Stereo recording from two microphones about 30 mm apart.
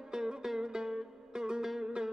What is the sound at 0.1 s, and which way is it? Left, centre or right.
Music, right.